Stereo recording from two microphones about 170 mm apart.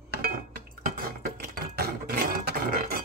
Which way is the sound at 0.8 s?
60° right (ahead or behind).